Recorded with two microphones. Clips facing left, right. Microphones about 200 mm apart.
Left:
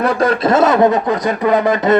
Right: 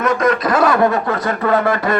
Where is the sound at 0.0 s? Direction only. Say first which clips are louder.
Left 2 dB; 30° left (ahead or behind).